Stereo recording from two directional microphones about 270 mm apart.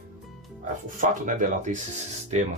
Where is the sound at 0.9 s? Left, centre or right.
Right.